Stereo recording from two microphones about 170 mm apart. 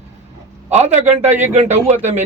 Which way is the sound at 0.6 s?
40° right (ahead or behind).